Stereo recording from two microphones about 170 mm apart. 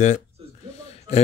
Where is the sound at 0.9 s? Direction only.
35° left (ahead or behind).